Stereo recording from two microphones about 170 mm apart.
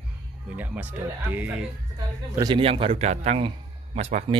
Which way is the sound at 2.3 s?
25° right (ahead or behind).